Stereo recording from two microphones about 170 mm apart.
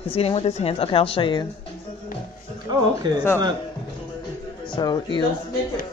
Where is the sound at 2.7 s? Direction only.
25° right (ahead or behind).